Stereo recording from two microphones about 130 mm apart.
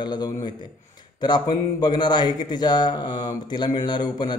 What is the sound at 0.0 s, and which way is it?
A man's voice, 35° left (ahead or behind).